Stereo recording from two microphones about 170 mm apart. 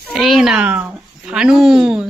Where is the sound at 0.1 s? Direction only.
Centre (ahead or behind).